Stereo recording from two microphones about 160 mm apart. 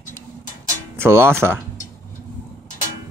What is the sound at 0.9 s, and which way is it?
Speech, 15° right (ahead or behind).